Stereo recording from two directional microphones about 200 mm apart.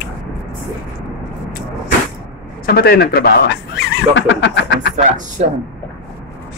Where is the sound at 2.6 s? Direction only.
50° left (ahead or behind).